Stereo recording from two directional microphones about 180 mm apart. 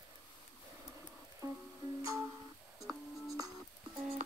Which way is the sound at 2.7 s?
20° right (ahead or behind).